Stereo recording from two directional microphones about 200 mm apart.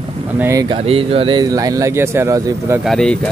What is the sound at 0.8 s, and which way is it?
Speech, 30° right (ahead or behind).